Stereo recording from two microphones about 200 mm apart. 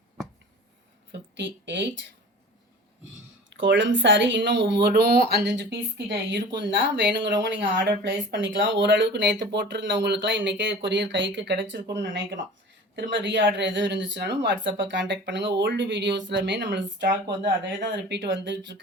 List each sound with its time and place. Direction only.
1.4 s speech: 60° right (ahead or behind)
3.5 s speech: 60° right (ahead or behind)